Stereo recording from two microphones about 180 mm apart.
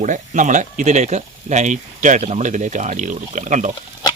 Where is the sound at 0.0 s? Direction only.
45° right (ahead or behind).